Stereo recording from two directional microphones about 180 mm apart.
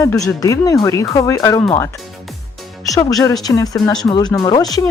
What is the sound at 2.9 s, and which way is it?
Speech, 20° left (ahead or behind).